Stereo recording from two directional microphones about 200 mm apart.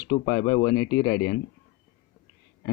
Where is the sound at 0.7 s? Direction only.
55° left (ahead or behind).